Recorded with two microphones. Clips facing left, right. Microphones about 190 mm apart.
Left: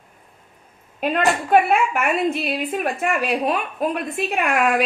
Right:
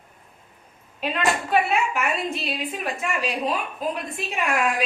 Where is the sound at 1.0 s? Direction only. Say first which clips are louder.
Left 4 dB; 50° left (ahead or behind).